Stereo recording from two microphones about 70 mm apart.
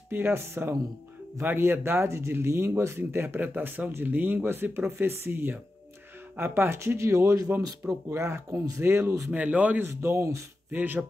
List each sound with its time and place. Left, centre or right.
0.1 s speech: right
3.3 s speech: right
9.3 s speech: centre
10.0 s speech: right
10.7 s speech: right